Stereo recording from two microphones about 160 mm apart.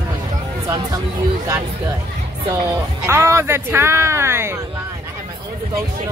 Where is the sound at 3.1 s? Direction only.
15° right (ahead or behind).